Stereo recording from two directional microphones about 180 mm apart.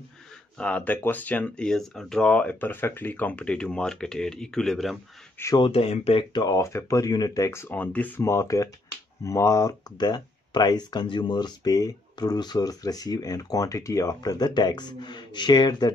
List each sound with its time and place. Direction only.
0.6 s speech: 5° left (ahead or behind)
5.4 s speech: 20° left (ahead or behind)
5.7 s speech: 35° left (ahead or behind)